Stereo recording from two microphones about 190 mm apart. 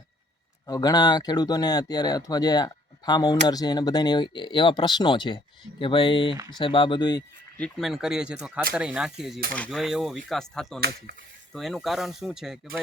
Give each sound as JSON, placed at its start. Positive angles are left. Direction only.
{"t": 0.7, "sound": "speech", "side_deg": 20}
{"t": 7.6, "sound": "speech", "side_deg": 0}
{"t": 10.8, "sound": "speech", "side_deg": -55}
{"t": 11.5, "sound": "speech", "side_deg": 0}